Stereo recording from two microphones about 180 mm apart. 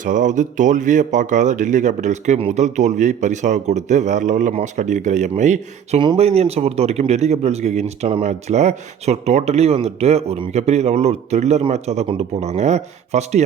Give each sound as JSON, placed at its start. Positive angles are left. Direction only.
{"t": 0.0, "sound": "speech", "side_deg": -45}